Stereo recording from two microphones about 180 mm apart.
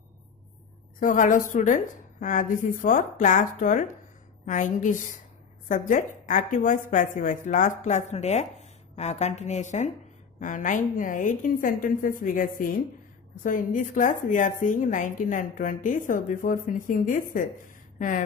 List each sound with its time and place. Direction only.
0.9 s a woman's voice: 45° left (ahead or behind)